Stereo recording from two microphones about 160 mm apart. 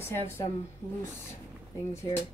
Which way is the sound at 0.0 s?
15° left (ahead or behind).